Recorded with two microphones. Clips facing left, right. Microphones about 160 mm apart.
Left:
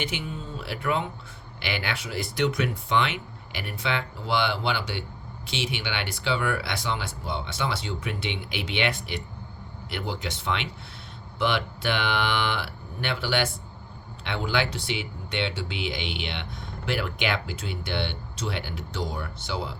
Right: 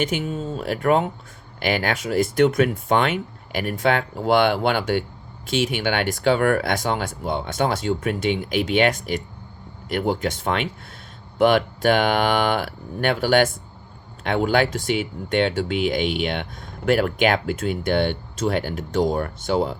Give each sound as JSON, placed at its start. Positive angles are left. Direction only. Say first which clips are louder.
{"t": 0.0, "sound": "speech", "louder": "right 8 dB", "side_deg": -45}